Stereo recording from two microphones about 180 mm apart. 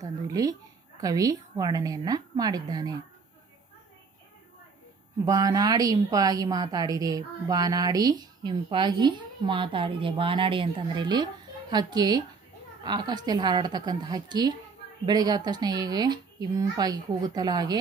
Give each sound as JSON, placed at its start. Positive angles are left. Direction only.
{"t": 0.0, "sound": "a woman's voice", "side_deg": -20}
{"t": 5.2, "sound": "a woman's voice", "side_deg": -20}